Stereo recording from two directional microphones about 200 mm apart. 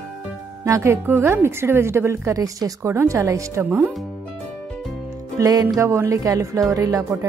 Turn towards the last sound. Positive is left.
turn(degrees=-15)  # may be behind; listen again after turning